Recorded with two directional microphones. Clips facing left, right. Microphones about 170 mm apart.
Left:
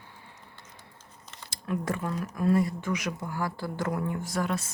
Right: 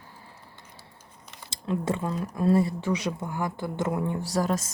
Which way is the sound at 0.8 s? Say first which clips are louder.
Right 1 dB; 15° right (ahead or behind).